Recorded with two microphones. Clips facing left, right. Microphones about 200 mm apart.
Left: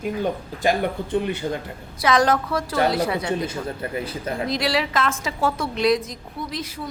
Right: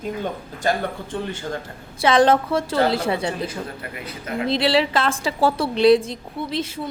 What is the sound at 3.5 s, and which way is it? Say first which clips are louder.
Speech: left 3 dB; 30° left (ahead or behind).